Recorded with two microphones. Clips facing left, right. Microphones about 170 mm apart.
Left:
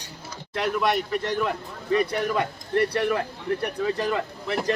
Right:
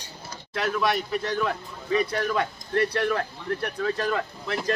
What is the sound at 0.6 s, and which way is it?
Speech, 5° left (ahead or behind).